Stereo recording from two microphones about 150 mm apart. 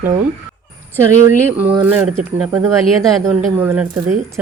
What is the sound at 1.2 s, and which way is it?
A man's voice, 15° right (ahead or behind).